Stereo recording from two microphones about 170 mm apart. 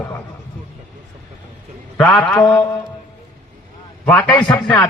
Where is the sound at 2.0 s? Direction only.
5° left (ahead or behind).